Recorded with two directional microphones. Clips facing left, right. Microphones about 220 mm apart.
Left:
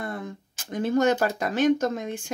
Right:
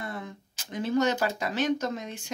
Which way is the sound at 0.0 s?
50° left (ahead or behind).